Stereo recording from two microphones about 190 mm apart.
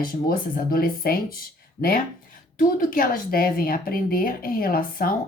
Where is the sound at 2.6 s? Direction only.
50° left (ahead or behind).